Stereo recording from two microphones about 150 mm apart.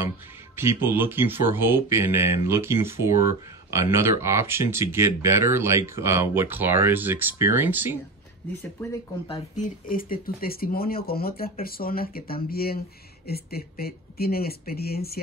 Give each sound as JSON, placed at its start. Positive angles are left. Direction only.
{"t": 0.6, "sound": "speech", "side_deg": -15}
{"t": 9.8, "sound": "speech", "side_deg": 70}